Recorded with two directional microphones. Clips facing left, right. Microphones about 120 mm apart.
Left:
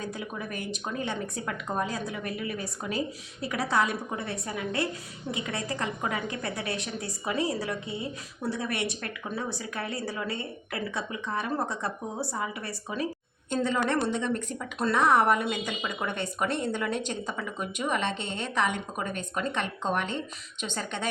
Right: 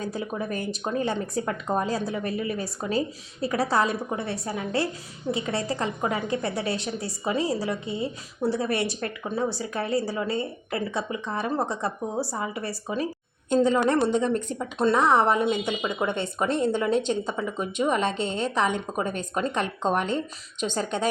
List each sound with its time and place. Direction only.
0.0 s a woman's voice: 35° right (ahead or behind)